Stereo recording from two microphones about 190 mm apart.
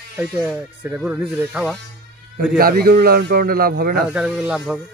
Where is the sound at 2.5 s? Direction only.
50° right (ahead or behind).